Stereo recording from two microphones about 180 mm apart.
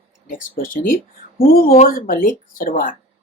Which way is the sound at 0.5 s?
50° left (ahead or behind).